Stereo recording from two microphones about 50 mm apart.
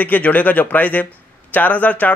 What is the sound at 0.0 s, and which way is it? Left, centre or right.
Speech, left.